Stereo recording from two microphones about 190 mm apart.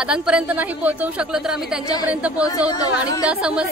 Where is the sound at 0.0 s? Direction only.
5° right (ahead or behind).